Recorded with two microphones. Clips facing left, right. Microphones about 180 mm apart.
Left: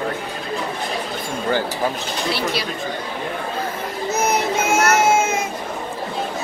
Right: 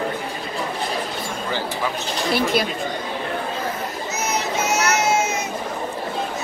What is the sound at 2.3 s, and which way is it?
Speech, 50° right (ahead or behind).